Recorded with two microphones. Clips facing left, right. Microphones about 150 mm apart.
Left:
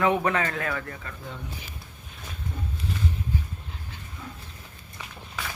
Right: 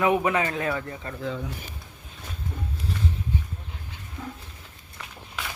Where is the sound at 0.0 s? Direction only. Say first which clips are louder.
Right 1 dB; 10° right (ahead or behind).